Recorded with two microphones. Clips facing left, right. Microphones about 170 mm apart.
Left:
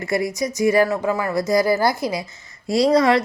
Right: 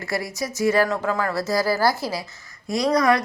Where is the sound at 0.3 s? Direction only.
15° left (ahead or behind).